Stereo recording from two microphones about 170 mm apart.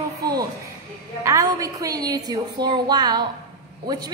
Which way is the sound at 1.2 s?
20° right (ahead or behind).